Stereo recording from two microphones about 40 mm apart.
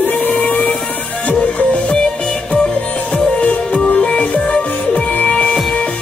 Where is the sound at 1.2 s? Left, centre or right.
Left.